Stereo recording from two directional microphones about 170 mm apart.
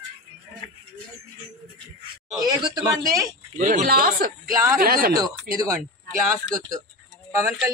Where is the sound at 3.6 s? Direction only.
50° right (ahead or behind).